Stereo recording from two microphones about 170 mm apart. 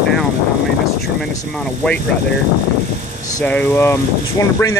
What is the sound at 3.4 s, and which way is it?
Speech, 10° left (ahead or behind).